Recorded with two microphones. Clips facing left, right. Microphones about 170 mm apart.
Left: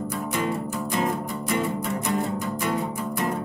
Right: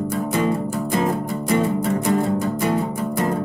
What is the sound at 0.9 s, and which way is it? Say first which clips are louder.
Music: right 4 dB; 40° right (ahead or behind).